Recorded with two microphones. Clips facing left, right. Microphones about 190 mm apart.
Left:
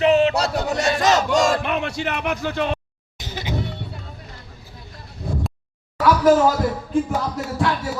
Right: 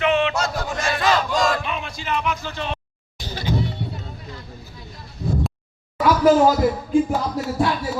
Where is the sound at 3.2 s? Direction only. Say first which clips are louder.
Right 2 dB; 20° left (ahead or behind).